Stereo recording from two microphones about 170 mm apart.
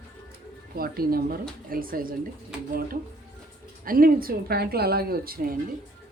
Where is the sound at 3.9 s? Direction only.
55° right (ahead or behind).